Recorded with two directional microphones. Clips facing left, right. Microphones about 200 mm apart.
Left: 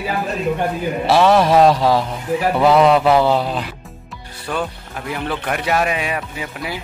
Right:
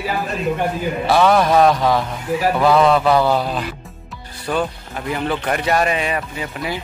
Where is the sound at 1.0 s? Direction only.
5° left (ahead or behind).